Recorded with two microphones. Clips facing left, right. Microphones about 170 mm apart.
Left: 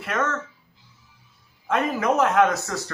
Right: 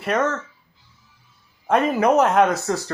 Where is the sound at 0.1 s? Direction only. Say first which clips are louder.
Right 5 dB; 35° right (ahead or behind).